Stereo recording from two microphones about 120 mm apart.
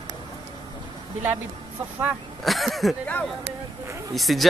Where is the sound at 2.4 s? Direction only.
Centre (ahead or behind).